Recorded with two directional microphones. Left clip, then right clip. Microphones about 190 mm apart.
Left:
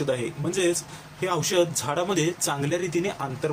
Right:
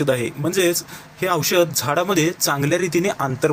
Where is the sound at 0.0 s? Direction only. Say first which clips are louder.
Right 7 dB; 40° right (ahead or behind).